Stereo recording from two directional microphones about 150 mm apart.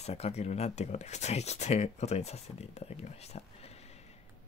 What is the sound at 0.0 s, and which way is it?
Speech, 45° left (ahead or behind).